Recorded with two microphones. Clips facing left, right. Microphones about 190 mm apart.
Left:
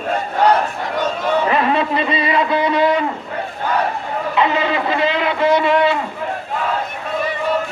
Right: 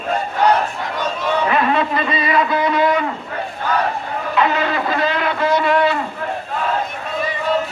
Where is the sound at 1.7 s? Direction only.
30° left (ahead or behind).